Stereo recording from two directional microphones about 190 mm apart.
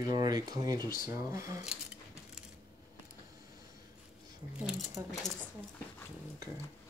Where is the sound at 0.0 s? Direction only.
20° right (ahead or behind).